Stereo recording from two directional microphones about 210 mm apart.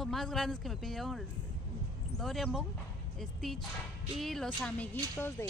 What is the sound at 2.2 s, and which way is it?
Speech, centre (ahead or behind).